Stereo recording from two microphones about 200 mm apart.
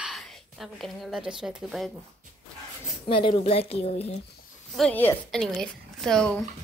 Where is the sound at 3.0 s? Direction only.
25° left (ahead or behind).